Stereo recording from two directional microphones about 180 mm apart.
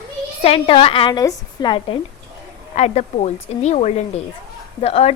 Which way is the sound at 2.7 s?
40° left (ahead or behind).